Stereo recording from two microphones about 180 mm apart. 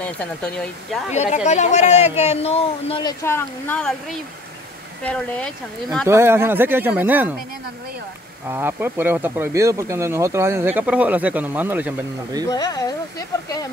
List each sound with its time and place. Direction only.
0.0 s speech: 5° left (ahead or behind)
1.1 s speech: 40° left (ahead or behind)
3.0 s speech: 20° left (ahead or behind)
6.0 s speech: 15° right (ahead or behind)
8.5 s speech: 15° right (ahead or behind)
12.4 s speech: 20° left (ahead or behind)